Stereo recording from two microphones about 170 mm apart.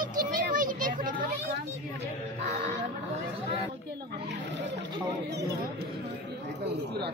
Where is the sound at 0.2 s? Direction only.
55° right (ahead or behind).